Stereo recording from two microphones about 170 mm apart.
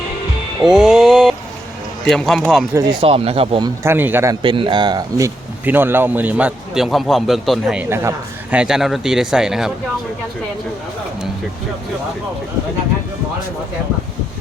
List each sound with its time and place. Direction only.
0.6 s a sound: 5° right (ahead or behind)
2.0 s speech: 5° left (ahead or behind)
2.7 s speech: 30° right (ahead or behind)
3.8 s speech: 10° right (ahead or behind)
4.4 s speech: 30° right (ahead or behind); by 7.9 s centre (ahead or behind)
7.9 s speech: 15° right (ahead or behind)